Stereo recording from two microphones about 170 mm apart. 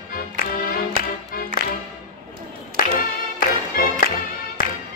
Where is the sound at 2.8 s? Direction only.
55° left (ahead or behind).